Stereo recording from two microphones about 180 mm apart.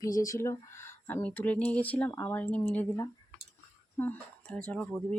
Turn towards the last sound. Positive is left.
turn(degrees=10)  # may be behind; listen again after turning